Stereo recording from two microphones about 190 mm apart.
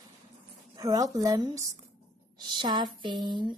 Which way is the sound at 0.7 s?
20° right (ahead or behind).